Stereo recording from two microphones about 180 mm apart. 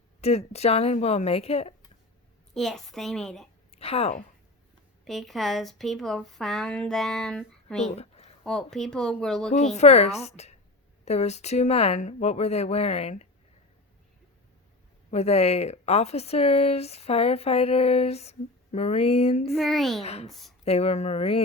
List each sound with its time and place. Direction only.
0.2 s speech: 35° left (ahead or behind)
2.6 s a woman's voice: centre (ahead or behind)
3.7 s a woman's voice: 35° left (ahead or behind)
5.0 s a woman's voice: centre (ahead or behind)
7.9 s a sound: 35° left (ahead or behind)
8.4 s a woman's voice: 5° left (ahead or behind)
9.5 s speech: 40° left (ahead or behind)
15.1 s speech: 35° left (ahead or behind)
19.5 s a woman's voice: centre (ahead or behind)
20.0 s speech: 35° left (ahead or behind)